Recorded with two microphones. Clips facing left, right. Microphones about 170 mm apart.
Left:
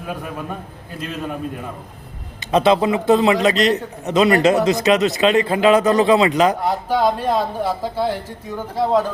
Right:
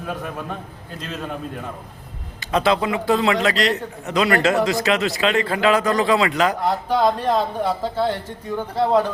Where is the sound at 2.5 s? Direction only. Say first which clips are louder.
Left 4 dB; 20° left (ahead or behind).